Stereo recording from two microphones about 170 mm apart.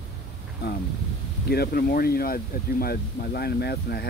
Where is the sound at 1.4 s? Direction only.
65° left (ahead or behind).